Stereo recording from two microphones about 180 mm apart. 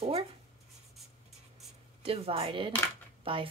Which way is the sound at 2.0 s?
30° right (ahead or behind).